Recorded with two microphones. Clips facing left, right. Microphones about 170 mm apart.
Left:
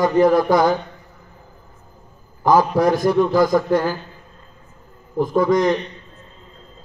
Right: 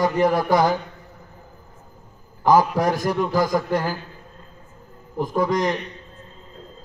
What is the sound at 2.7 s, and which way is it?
A man's voice, 10° right (ahead or behind).